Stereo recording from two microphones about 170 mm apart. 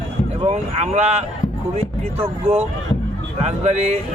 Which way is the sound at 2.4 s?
35° right (ahead or behind).